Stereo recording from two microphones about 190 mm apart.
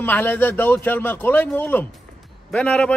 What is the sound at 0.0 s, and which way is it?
A man's voice, 10° left (ahead or behind).